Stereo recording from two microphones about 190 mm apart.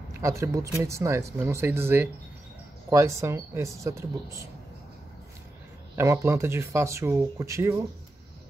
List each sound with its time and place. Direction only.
0.1 s speech: 15° right (ahead or behind)
5.9 s speech: 15° right (ahead or behind)